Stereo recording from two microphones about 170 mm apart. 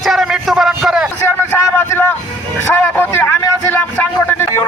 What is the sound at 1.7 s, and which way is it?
Vehicle, 10° left (ahead or behind).